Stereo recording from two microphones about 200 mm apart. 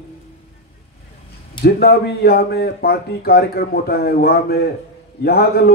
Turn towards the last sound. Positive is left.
turn(degrees=50)  # may be behind; listen again after turning